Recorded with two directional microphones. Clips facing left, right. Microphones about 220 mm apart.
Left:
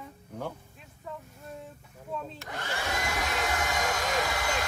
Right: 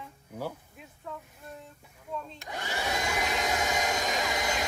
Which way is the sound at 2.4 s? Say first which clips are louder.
Even; 15° right (ahead or behind).